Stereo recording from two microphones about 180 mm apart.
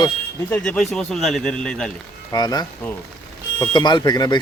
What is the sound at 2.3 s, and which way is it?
Speech, 25° left (ahead or behind).